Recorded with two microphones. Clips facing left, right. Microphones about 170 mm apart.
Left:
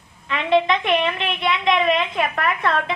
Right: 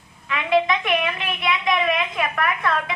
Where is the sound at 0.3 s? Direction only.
30° left (ahead or behind).